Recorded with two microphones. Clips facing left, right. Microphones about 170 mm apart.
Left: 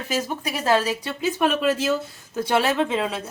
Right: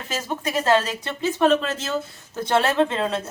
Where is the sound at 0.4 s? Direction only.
10° left (ahead or behind).